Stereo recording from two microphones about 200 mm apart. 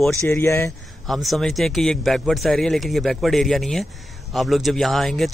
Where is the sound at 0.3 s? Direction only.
15° left (ahead or behind).